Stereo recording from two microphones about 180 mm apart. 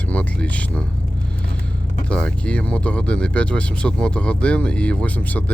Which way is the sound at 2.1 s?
5° left (ahead or behind).